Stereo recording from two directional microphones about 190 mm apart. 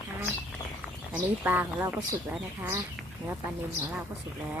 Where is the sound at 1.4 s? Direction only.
10° right (ahead or behind).